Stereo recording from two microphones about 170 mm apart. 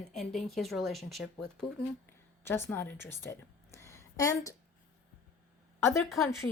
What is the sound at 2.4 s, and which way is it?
A woman's voice, 15° left (ahead or behind).